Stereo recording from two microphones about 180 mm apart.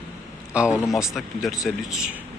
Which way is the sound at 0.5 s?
5° right (ahead or behind).